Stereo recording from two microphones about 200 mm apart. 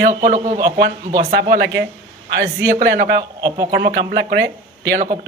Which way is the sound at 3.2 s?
15° right (ahead or behind).